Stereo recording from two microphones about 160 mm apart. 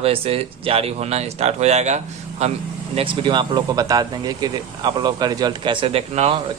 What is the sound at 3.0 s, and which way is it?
Speech, 30° right (ahead or behind).